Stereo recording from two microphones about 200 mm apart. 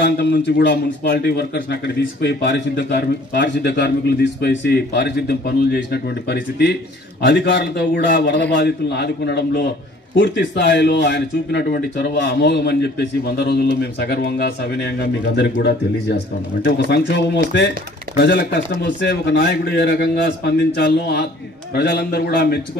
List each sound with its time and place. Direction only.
0.0 s speech: 55° left (ahead or behind)